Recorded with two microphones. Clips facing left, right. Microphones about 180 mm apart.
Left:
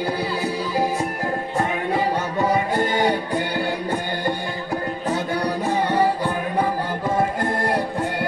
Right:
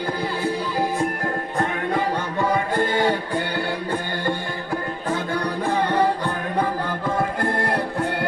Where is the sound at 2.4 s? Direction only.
15° left (ahead or behind).